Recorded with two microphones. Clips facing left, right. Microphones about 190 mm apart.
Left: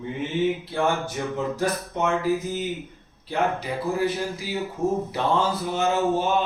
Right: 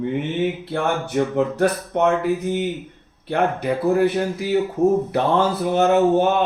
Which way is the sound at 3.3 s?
60° right (ahead or behind).